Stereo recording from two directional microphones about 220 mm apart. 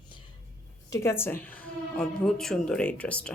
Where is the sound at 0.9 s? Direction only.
10° left (ahead or behind).